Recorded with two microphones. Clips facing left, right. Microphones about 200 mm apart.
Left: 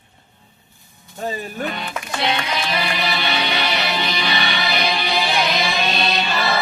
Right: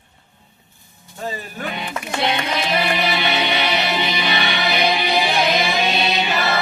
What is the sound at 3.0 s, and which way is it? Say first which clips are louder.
Music: right 2 dB; 20° right (ahead or behind).